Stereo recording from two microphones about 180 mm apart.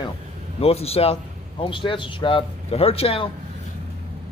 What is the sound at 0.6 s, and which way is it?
A man's voice, 35° left (ahead or behind).